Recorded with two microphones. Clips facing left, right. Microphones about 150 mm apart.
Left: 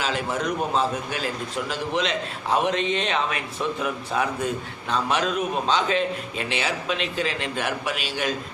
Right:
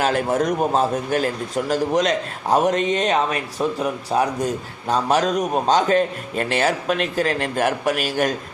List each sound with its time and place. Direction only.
0.0 s a man's voice: 50° right (ahead or behind)